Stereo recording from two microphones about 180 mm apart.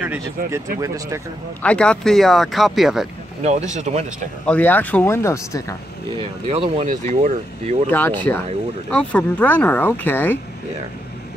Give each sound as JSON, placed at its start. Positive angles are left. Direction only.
{"t": 0.4, "sound": "speech", "side_deg": -50}
{"t": 0.7, "sound": "speech", "side_deg": -20}
{"t": 1.6, "sound": "speech", "side_deg": 5}
{"t": 3.4, "sound": "speech", "side_deg": -40}
{"t": 4.5, "sound": "speech", "side_deg": 10}
{"t": 6.1, "sound": "speech", "side_deg": -30}
{"t": 7.9, "sound": "speech", "side_deg": 10}